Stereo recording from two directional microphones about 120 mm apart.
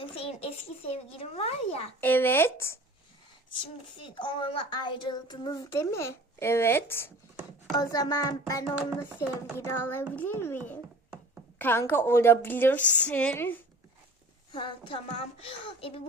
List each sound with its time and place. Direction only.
0.0 s a child's voice: 50° left (ahead or behind)
2.0 s a woman's voice: 15° left (ahead or behind)
4.1 s speech: 40° left (ahead or behind)
5.7 s speech: 25° left (ahead or behind)
7.8 s a woman's voice: 30° left (ahead or behind)
14.5 s a woman's voice: 45° left (ahead or behind)